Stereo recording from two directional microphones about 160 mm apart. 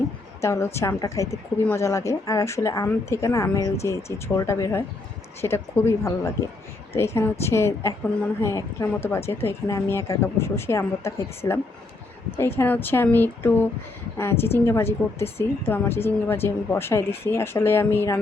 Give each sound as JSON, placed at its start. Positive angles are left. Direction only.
{"t": 0.4, "sound": "a woman's voice", "side_deg": 15}